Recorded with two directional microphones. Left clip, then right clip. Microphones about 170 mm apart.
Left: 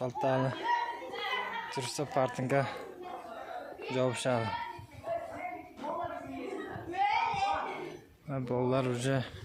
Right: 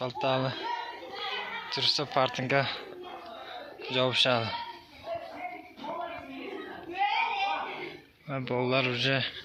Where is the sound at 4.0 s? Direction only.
10° left (ahead or behind).